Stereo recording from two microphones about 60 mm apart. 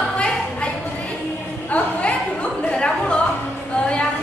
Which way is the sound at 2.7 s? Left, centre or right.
Centre.